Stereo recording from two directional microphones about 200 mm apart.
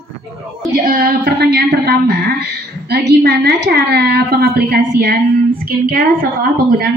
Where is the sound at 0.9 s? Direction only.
45° right (ahead or behind).